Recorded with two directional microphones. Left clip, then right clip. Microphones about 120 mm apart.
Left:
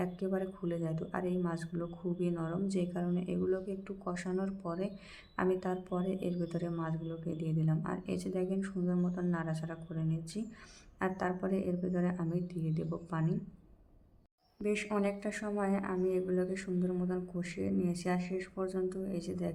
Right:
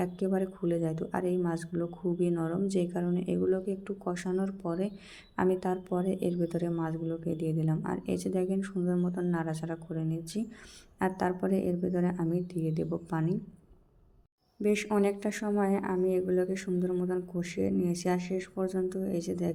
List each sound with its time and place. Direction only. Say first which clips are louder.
0.0 s speech: right 5 dB; 30° right (ahead or behind)
14.6 s speech: right 6 dB; 35° right (ahead or behind)